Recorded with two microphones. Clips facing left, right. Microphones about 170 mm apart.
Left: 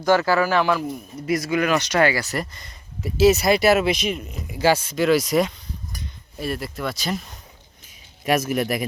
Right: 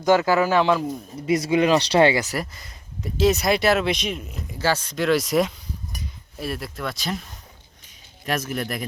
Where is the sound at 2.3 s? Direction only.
5° right (ahead or behind).